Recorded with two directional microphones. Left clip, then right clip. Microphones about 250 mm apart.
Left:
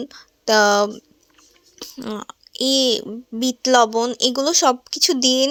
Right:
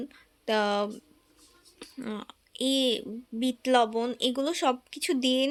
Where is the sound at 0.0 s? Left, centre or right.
Left.